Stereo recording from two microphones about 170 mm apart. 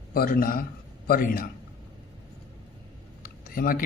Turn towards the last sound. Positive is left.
turn(degrees=60)  # may be behind; listen again after turning